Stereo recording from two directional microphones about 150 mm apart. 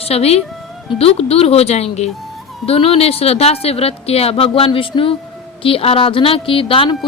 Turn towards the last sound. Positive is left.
turn(degrees=35)  # may be behind; listen again after turning